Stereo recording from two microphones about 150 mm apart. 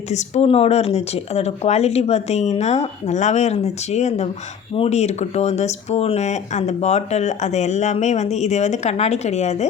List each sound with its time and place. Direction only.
0.1 s speech: 50° left (ahead or behind)